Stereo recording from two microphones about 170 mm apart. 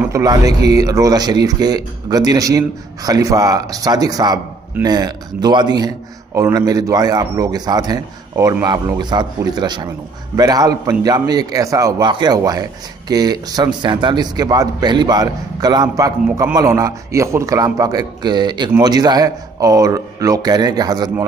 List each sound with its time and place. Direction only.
0.0 s a man's voice: 20° right (ahead or behind)